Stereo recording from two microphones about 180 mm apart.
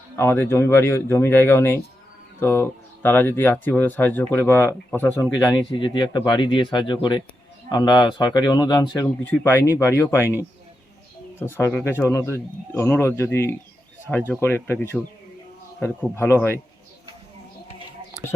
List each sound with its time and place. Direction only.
0.2 s speech: 10° left (ahead or behind)
9.2 s speech: 10° left (ahead or behind)
11.3 s speech: 10° left (ahead or behind)